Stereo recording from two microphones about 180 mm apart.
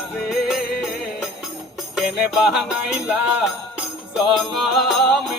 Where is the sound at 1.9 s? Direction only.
5° right (ahead or behind).